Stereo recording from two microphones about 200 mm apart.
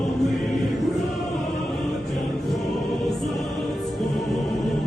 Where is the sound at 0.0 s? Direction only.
Centre (ahead or behind).